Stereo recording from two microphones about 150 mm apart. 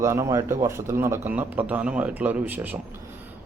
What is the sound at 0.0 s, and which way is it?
A man's voice, 20° right (ahead or behind).